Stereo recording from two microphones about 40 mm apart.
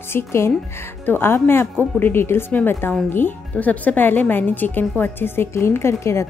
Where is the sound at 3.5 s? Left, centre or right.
Left.